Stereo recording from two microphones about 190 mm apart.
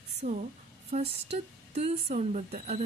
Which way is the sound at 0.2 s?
40° right (ahead or behind).